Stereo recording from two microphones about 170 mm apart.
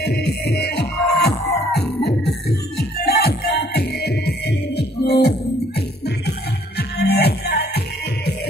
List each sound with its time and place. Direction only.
0.0 s music: 75° left (ahead or behind)
3.1 s music: 70° left (ahead or behind)